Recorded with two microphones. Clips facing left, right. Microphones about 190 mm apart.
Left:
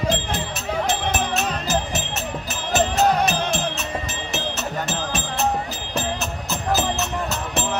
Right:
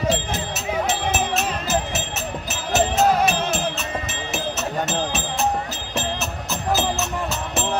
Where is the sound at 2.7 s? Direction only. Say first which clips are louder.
Right 1 dB; 5° right (ahead or behind).